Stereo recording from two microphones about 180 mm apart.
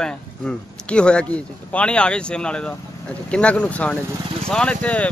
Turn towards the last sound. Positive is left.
turn(degrees=5)  # may be behind; listen again after turning